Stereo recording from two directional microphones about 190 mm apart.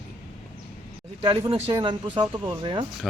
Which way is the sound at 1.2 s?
25° right (ahead or behind).